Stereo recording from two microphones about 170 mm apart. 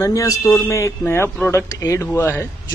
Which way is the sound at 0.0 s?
20° left (ahead or behind).